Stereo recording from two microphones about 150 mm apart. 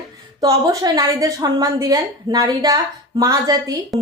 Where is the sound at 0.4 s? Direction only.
25° right (ahead or behind).